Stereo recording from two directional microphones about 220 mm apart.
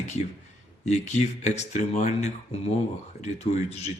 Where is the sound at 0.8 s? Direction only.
30° left (ahead or behind).